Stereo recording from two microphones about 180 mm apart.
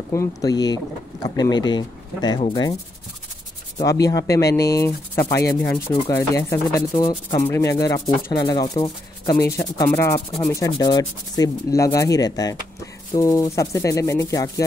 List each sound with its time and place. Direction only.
0.1 s speech: 20° left (ahead or behind)
3.7 s speech: 20° left (ahead or behind)